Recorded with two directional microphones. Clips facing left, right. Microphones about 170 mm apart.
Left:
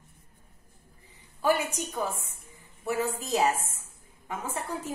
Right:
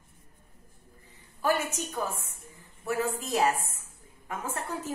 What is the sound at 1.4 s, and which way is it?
A woman's voice, 15° left (ahead or behind).